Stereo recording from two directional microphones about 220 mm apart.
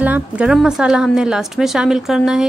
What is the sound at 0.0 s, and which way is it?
A woman's voice, 5° right (ahead or behind).